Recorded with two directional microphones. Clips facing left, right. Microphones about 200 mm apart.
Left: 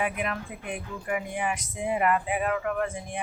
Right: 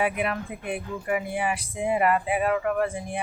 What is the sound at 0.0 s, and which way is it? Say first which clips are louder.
Speech: right 4 dB; 10° right (ahead or behind).